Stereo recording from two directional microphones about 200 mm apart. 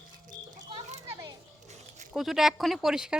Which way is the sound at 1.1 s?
20° right (ahead or behind).